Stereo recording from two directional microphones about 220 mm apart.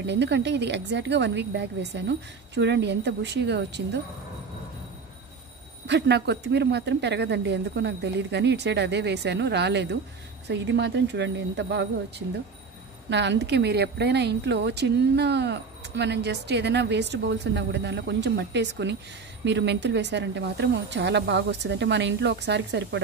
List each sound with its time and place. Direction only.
0.0 s speech: 50° right (ahead or behind)
5.9 s speech: 50° right (ahead or behind)
13.1 s speech: 55° right (ahead or behind)